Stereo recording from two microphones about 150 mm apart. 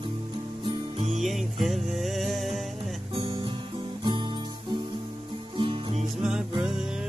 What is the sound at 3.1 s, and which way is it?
Guitar, 35° right (ahead or behind).